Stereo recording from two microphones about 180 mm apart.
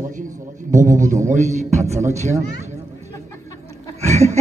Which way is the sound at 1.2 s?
40° right (ahead or behind).